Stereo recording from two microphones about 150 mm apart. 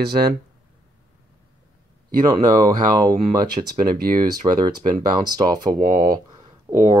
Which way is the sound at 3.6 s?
35° right (ahead or behind).